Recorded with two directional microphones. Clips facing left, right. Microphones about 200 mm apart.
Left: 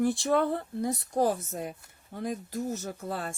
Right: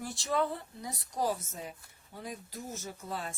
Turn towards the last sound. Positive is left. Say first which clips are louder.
# left 5 dB
turn(degrees=65)  # may be behind; listen again after turning